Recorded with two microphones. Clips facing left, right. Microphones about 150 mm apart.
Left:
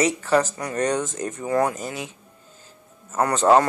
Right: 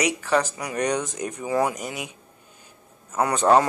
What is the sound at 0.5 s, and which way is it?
Speech, 15° right (ahead or behind).